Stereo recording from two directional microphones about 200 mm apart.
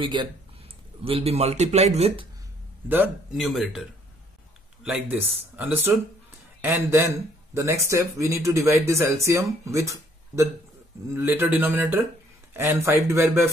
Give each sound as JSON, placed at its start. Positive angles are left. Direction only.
{"t": 0.0, "sound": "a man's voice", "side_deg": -25}
{"t": 2.9, "sound": "speech", "side_deg": -5}
{"t": 4.8, "sound": "speech", "side_deg": -10}